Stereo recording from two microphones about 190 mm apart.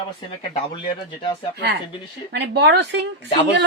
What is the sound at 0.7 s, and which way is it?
Speech, 25° left (ahead or behind).